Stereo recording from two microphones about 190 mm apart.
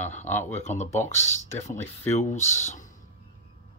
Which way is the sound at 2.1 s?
35° left (ahead or behind).